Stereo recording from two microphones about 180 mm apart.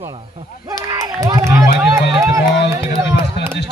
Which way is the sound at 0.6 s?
20° right (ahead or behind).